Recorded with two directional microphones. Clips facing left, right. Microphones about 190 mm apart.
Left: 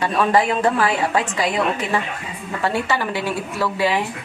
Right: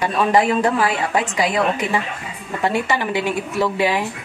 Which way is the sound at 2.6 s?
20° right (ahead or behind).